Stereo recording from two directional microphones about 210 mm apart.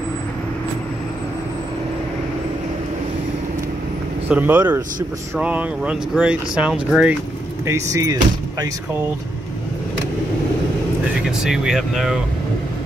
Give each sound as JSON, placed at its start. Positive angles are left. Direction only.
{"t": 4.3, "sound": "speech", "side_deg": -10}
{"t": 7.6, "sound": "speech", "side_deg": -15}
{"t": 11.2, "sound": "speech", "side_deg": -5}